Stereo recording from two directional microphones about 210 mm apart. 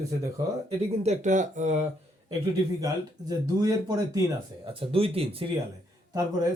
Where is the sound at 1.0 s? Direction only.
35° right (ahead or behind).